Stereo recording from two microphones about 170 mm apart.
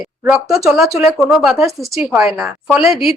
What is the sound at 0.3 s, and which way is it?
A woman's voice, 5° right (ahead or behind).